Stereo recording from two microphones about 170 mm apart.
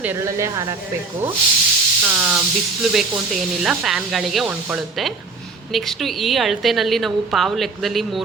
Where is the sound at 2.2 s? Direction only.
5° right (ahead or behind).